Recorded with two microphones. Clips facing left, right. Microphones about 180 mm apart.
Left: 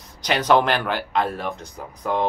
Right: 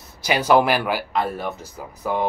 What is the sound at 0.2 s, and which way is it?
Speech, 10° right (ahead or behind).